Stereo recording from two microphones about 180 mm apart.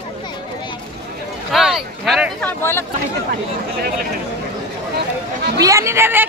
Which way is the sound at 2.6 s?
10° left (ahead or behind).